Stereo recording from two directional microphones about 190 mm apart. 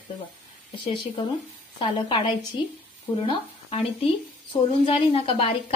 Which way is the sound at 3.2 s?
30° left (ahead or behind).